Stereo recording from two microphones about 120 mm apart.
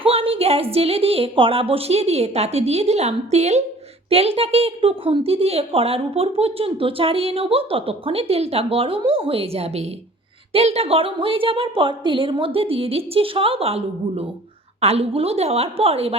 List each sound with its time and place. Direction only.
0.0 s a woman's voice: 50° right (ahead or behind); by 3.6 s 65° right (ahead or behind)
4.1 s a woman's voice: 55° right (ahead or behind)